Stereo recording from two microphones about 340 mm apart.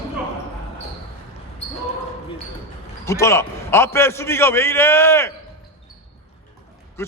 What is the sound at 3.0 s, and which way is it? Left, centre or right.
A man's voice, centre.